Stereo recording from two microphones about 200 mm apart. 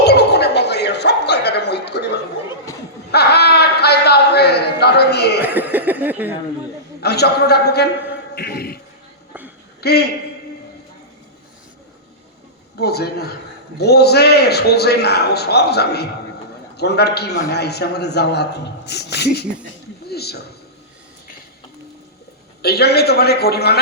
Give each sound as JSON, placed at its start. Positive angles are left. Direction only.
{"t": 0.0, "sound": "a sound", "side_deg": 55}
{"t": 5.4, "sound": "a sound", "side_deg": -10}
{"t": 7.0, "sound": "a man's voice", "side_deg": 55}
{"t": 9.8, "sound": "a man's voice", "side_deg": 55}
{"t": 12.7, "sound": "a man's voice", "side_deg": 55}
{"t": 22.6, "sound": "a man's voice", "side_deg": 55}